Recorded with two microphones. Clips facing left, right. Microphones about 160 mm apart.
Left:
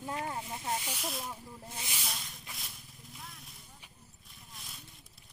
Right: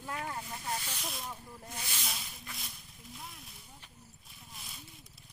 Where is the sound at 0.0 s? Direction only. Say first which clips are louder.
Left 2 dB; 25° left (ahead or behind).